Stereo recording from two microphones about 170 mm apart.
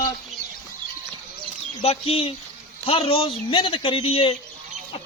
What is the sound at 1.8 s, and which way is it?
A man's voice, 35° left (ahead or behind).